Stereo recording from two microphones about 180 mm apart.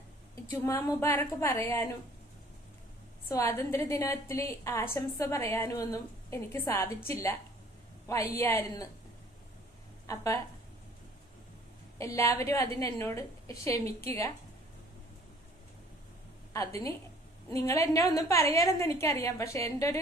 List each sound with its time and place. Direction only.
0.5 s a woman's voice: 15° left (ahead or behind)
3.2 s a woman's voice: 15° left (ahead or behind)
10.1 s a woman's voice: 15° left (ahead or behind)
11.9 s a woman's voice: 15° left (ahead or behind)
16.5 s a woman's voice: 15° left (ahead or behind)